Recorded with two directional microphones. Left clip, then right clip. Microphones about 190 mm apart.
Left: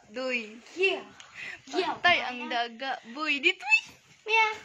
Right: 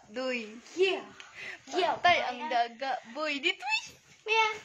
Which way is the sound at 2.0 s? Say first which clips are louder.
Left 3 dB; centre (ahead or behind).